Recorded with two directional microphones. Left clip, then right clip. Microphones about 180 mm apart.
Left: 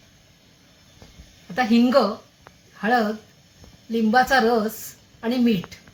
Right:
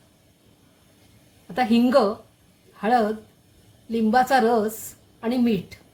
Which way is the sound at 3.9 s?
15° right (ahead or behind).